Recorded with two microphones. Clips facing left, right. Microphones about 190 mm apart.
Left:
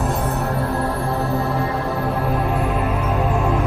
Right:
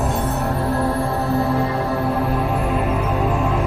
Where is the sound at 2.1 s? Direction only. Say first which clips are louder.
Right 1 dB; centre (ahead or behind).